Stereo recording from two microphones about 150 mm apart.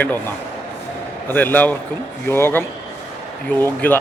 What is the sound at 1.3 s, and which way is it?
A man's voice, 10° left (ahead or behind).